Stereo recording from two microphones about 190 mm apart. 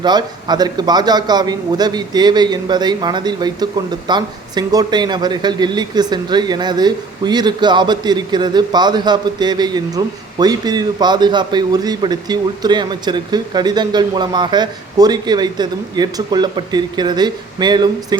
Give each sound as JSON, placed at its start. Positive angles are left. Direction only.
{"t": 0.0, "sound": "a man's voice", "side_deg": -20}